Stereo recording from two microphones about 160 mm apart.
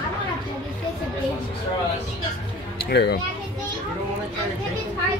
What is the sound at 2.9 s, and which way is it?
Speech, 90° left.